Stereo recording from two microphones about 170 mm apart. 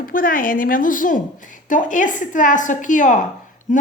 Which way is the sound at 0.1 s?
55° left (ahead or behind).